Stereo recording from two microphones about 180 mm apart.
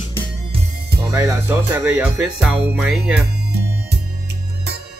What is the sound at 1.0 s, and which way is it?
Speech, 15° right (ahead or behind).